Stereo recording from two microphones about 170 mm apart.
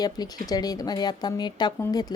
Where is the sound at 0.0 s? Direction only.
25° left (ahead or behind).